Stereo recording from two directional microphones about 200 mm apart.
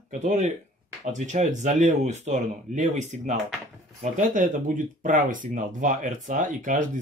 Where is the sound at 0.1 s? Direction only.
35° right (ahead or behind).